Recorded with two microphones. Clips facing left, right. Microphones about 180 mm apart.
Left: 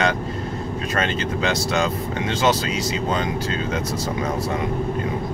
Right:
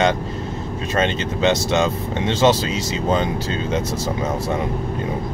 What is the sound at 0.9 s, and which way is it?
Speech, 25° right (ahead or behind).